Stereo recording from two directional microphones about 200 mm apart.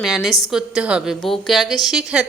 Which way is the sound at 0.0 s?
Centre (ahead or behind).